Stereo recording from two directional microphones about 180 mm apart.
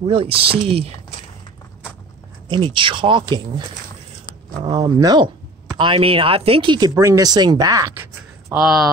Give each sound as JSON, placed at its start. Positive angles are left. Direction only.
{"t": 0.0, "sound": "speech", "side_deg": -30}
{"t": 2.5, "sound": "speech", "side_deg": -30}
{"t": 8.5, "sound": "speech", "side_deg": 0}